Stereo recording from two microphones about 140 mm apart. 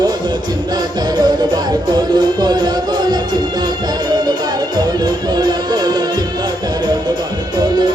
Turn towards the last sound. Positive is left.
turn(degrees=-30)  # may be behind; listen again after turning